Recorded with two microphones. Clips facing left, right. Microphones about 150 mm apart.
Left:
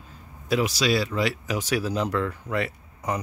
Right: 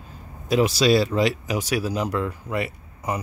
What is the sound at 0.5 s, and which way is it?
Speech, 25° right (ahead or behind).